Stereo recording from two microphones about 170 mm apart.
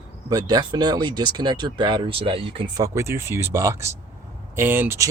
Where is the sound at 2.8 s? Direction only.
15° right (ahead or behind).